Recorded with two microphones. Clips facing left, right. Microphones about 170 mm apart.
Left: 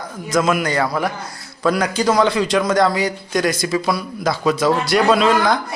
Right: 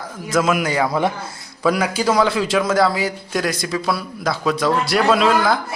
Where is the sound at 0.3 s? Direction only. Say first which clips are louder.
Left 1 dB; 5° right (ahead or behind).